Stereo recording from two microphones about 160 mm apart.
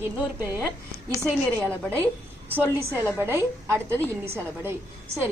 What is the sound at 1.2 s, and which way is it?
Speech, 10° left (ahead or behind).